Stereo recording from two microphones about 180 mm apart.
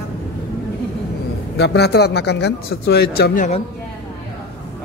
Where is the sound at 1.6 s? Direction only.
65° left (ahead or behind).